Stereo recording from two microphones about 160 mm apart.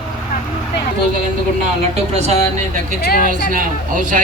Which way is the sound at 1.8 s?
40° right (ahead or behind).